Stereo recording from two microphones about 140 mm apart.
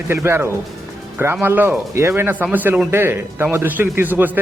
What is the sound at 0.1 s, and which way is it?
Speech, 20° right (ahead or behind).